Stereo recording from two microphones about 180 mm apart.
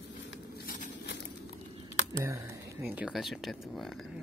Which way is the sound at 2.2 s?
15° right (ahead or behind).